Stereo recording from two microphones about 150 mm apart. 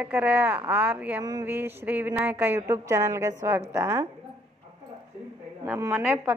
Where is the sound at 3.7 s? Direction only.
15° right (ahead or behind).